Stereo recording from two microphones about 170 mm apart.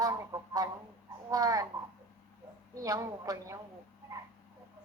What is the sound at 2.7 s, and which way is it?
Speech, 20° right (ahead or behind).